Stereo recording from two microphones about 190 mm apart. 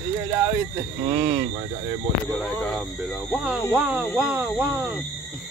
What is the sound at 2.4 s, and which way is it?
Speech, 5° left (ahead or behind).